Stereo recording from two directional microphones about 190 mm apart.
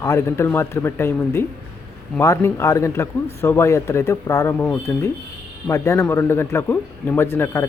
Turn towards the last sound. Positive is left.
turn(degrees=15)  # may be behind; listen again after turning